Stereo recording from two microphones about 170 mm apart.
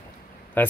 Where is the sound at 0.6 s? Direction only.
10° left (ahead or behind).